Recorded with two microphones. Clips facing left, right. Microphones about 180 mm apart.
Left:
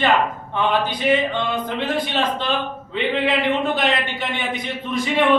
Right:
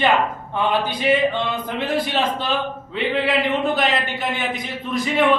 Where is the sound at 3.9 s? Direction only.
Centre (ahead or behind).